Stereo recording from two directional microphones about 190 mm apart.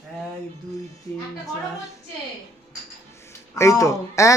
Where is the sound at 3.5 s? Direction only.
15° left (ahead or behind).